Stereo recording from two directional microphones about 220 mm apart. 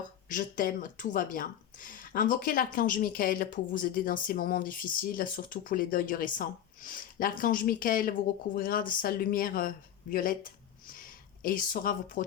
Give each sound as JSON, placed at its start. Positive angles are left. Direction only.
{"t": 0.3, "sound": "speech", "side_deg": 40}